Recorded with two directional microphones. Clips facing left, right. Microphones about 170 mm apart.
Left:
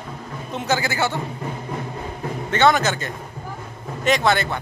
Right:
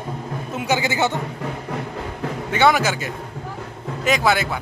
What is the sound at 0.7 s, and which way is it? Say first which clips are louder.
Speech: right 3 dB; 20° right (ahead or behind).